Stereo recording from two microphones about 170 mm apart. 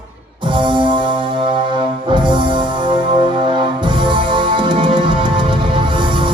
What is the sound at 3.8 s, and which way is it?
Music, 30° right (ahead or behind).